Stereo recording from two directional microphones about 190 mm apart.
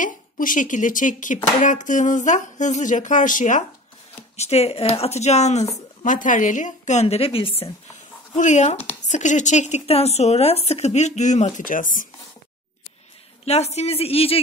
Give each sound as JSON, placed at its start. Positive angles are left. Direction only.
{"t": 0.0, "sound": "speech", "side_deg": 45}
{"t": 13.5, "sound": "speech", "side_deg": 35}